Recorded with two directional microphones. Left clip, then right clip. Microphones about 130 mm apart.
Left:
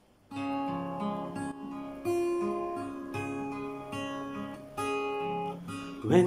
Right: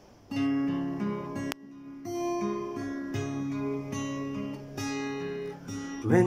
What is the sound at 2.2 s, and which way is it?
Guitar, 25° right (ahead or behind).